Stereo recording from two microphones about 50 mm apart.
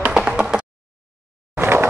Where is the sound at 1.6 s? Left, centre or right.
Right.